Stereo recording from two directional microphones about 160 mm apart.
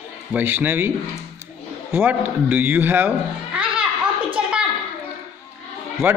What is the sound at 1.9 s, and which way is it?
Speech, 10° right (ahead or behind).